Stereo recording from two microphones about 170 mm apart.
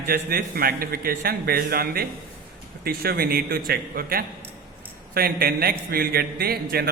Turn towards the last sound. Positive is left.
turn(degrees=-65)  # may be behind; listen again after turning